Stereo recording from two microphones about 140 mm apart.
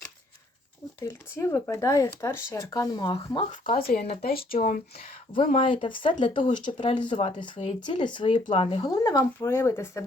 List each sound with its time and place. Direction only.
1.0 s speech: 20° left (ahead or behind)
3.5 s speech: 80° left
5.5 s speech: 40° left (ahead or behind)
9.0 s speech: 20° left (ahead or behind)